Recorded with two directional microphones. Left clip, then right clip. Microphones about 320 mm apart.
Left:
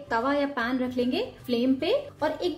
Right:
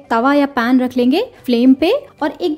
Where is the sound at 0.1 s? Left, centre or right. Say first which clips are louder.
Right 12 dB; right.